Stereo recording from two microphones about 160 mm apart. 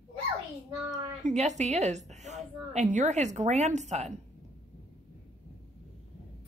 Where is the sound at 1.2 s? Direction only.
45° right (ahead or behind).